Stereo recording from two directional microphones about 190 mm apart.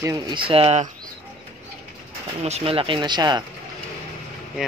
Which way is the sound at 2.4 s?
30° right (ahead or behind).